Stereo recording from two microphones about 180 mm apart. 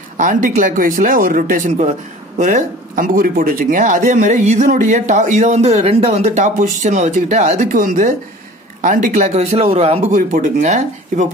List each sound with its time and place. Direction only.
0.2 s speech: 45° right (ahead or behind)